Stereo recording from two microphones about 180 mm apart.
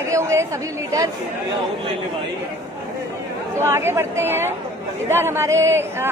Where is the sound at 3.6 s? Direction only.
15° right (ahead or behind).